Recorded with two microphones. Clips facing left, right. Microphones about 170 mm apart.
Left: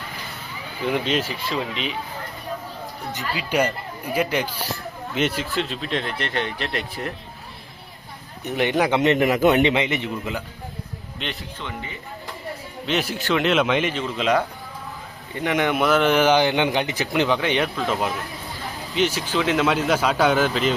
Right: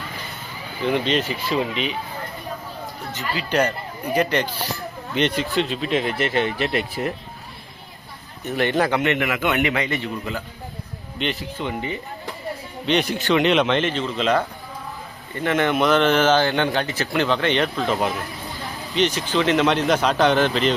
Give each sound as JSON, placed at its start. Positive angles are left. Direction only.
{"t": 0.9, "sound": "speech", "side_deg": 5}
{"t": 3.1, "sound": "a man's voice", "side_deg": 10}
{"t": 8.4, "sound": "a man's voice", "side_deg": 15}
{"t": 9.0, "sound": "a man's voice", "side_deg": 35}
{"t": 11.2, "sound": "speech", "side_deg": 0}
{"t": 11.6, "sound": "speech", "side_deg": -20}
{"t": 12.8, "sound": "a man's voice", "side_deg": 5}